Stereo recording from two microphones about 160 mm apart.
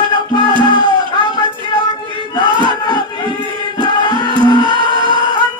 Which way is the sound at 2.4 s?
30° right (ahead or behind).